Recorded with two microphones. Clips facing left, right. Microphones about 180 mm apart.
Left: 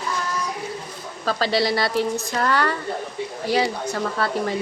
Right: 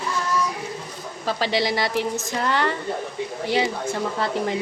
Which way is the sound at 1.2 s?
15° right (ahead or behind).